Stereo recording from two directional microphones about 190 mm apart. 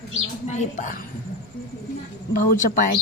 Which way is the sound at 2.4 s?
45° left (ahead or behind).